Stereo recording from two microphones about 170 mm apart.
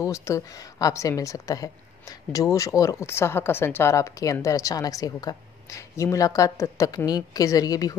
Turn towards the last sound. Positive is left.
turn(degrees=20)  # may be behind; listen again after turning